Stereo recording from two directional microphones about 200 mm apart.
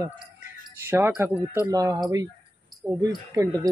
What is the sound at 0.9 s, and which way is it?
Speech, 10° right (ahead or behind).